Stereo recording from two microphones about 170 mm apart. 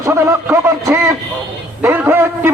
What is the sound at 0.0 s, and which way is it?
A man's voice, 15° right (ahead or behind).